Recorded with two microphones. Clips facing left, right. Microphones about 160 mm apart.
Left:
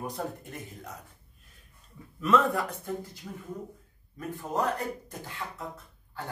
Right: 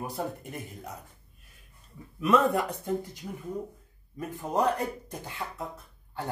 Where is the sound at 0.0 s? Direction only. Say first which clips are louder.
Right 1 dB; 10° right (ahead or behind).